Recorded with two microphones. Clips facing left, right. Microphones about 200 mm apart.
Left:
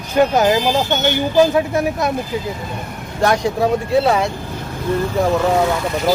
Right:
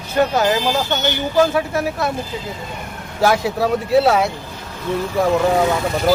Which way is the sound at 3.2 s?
5° right (ahead or behind).